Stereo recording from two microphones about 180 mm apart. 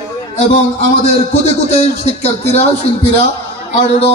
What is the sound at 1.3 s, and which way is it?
A man's voice, 40° left (ahead or behind).